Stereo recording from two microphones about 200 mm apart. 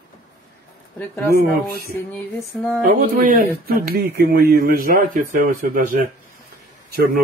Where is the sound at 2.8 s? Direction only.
45° right (ahead or behind).